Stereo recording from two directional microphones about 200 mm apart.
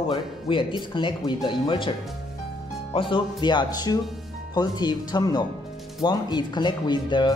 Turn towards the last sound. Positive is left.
turn(degrees=20)  # may be behind; listen again after turning